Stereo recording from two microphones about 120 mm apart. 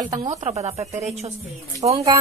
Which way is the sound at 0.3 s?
60° right (ahead or behind).